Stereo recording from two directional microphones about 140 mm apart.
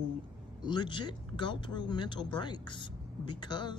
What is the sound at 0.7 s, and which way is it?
Speech, 35° left (ahead or behind).